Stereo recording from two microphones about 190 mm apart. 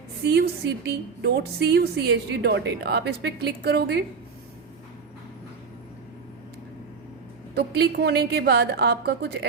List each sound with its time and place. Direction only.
0.3 s a woman's voice: 55° right (ahead or behind)
7.5 s a woman's voice: 60° right (ahead or behind)